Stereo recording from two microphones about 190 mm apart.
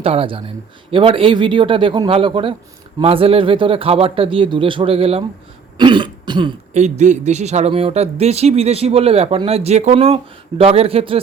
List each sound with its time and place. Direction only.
0.0 s speech: 30° right (ahead or behind)
5.7 s throat clearing: 25° right (ahead or behind)
6.7 s speech: 35° right (ahead or behind)